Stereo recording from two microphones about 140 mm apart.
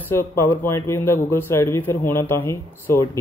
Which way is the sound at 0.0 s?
15° left (ahead or behind).